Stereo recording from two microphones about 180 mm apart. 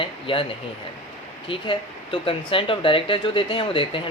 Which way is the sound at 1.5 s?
30° left (ahead or behind).